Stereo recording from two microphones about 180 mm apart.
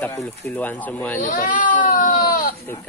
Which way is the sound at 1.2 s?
45° left (ahead or behind).